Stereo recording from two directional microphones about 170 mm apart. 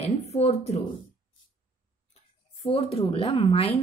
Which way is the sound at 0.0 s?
40° left (ahead or behind).